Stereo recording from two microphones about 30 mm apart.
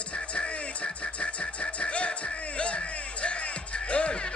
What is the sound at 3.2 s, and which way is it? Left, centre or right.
Music, left.